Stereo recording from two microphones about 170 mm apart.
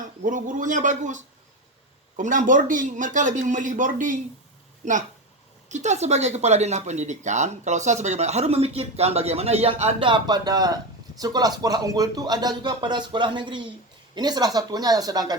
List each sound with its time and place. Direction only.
0.0 s speech: 50° right (ahead or behind); by 15.4 s 20° right (ahead or behind)